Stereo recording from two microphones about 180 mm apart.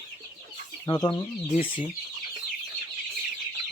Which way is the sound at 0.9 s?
25° left (ahead or behind).